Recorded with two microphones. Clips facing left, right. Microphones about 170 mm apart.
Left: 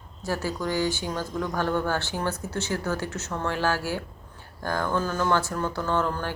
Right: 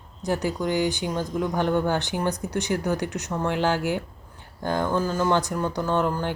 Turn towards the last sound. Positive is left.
turn(degrees=-15)  # may be behind; listen again after turning